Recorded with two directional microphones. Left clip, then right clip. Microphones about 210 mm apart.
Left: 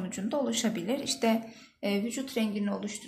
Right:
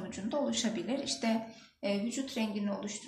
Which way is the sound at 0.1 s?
50° left (ahead or behind).